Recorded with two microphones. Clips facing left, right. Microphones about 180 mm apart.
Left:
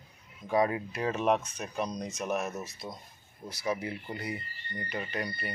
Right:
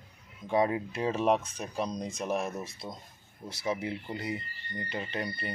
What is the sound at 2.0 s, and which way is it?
Speech, 30° right (ahead or behind).